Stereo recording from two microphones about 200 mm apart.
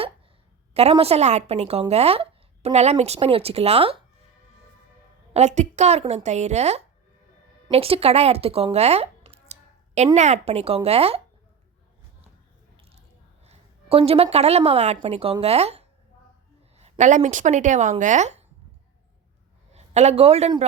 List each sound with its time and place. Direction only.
0.7 s a woman's voice: 30° right (ahead or behind)
5.3 s speech: 35° right (ahead or behind)
13.4 s a woman's voice: 30° right (ahead or behind)
19.7 s speech: 35° right (ahead or behind)